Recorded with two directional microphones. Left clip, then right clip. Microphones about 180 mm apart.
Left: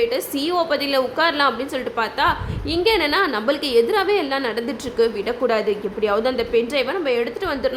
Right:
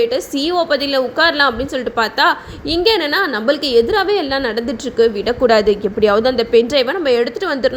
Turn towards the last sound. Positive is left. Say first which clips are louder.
# right 5 dB
turn(degrees=-20)  # may be behind; listen again after turning